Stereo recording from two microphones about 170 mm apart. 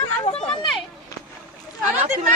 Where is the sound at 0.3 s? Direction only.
35° left (ahead or behind).